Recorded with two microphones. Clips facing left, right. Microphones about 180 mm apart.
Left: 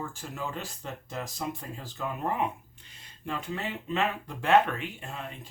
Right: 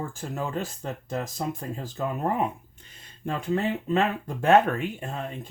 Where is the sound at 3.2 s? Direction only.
45° right (ahead or behind).